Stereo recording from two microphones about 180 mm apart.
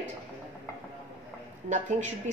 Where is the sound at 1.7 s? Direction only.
40° right (ahead or behind).